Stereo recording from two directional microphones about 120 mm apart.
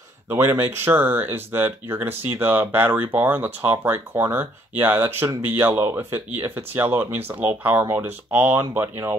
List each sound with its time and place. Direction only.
0.3 s speech: 20° right (ahead or behind)